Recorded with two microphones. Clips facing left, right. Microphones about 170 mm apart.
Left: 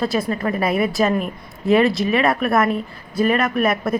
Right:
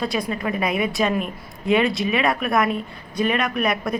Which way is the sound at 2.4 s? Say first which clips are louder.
Left 3 dB; 35° left (ahead or behind).